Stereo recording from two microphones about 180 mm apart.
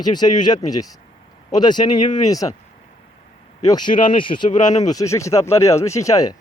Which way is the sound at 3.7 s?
25° left (ahead or behind).